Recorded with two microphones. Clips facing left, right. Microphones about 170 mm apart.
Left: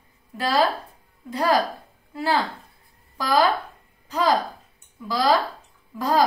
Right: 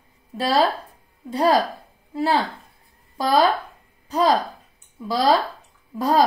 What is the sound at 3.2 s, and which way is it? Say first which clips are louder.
Speech: right 2 dB; 25° right (ahead or behind).